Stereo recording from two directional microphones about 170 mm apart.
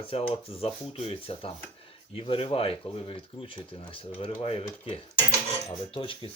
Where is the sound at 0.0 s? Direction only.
35° left (ahead or behind).